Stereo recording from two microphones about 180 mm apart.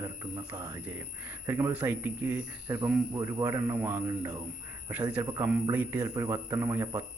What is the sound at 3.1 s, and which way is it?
A man's voice, 20° right (ahead or behind).